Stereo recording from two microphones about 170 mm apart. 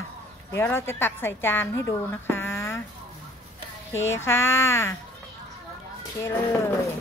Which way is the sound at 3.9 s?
15° left (ahead or behind).